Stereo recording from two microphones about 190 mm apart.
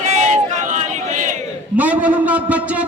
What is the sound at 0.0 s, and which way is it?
Crowd, 35° right (ahead or behind).